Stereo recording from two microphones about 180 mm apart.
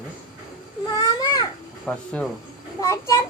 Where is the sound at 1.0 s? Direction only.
20° left (ahead or behind).